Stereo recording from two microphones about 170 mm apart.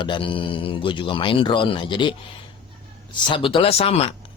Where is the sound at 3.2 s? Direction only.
30° left (ahead or behind).